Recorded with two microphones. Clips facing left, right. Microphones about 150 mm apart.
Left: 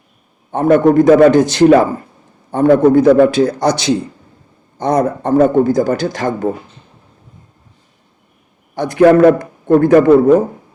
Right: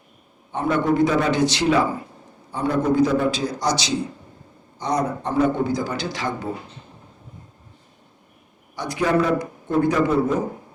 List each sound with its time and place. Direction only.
0.5 s a man's voice: 45° left (ahead or behind)
8.7 s speech: 55° left (ahead or behind)